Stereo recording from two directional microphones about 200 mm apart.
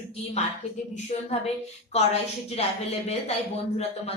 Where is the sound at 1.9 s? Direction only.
30° left (ahead or behind).